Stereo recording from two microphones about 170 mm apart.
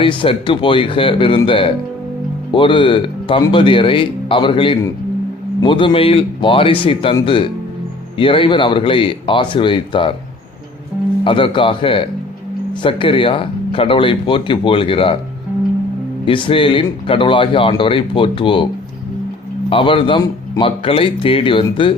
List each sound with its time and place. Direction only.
0.0 s a man's voice: 30° left (ahead or behind)
11.2 s speech: 30° left (ahead or behind)
16.2 s speech: 30° left (ahead or behind)
19.7 s speech: 30° left (ahead or behind)